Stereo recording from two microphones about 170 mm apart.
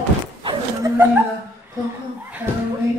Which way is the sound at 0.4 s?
30° right (ahead or behind).